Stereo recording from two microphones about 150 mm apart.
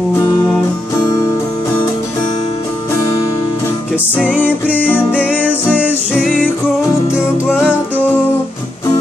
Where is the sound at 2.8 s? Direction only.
20° left (ahead or behind).